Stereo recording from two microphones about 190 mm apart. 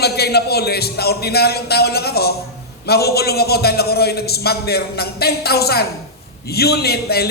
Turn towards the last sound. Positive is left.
turn(degrees=55)  # may be behind; listen again after turning